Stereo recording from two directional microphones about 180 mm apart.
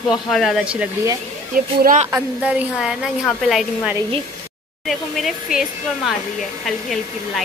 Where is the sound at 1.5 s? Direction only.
50° right (ahead or behind).